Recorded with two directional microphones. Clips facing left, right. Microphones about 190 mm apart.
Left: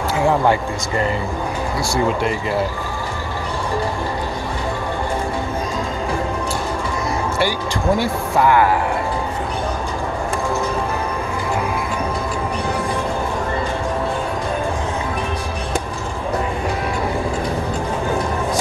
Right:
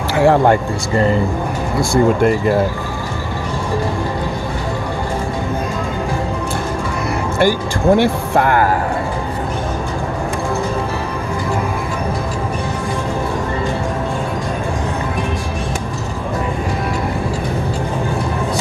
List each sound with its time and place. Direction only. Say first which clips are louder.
0.1 s a sound: right 6 dB; 75° right (ahead or behind)
1.8 s speech: right 7 dB; 50° right (ahead or behind)
7.3 s speech: right 5 dB; 60° right (ahead or behind)